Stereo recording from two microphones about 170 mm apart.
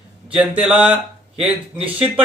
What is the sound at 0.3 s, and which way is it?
Speech, 5° right (ahead or behind).